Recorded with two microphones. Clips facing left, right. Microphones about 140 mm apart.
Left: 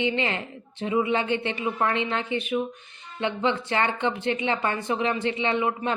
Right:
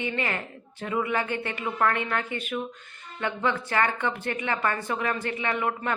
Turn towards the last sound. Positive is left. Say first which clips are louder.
# left 3 dB
turn(degrees=20)  # may be behind; listen again after turning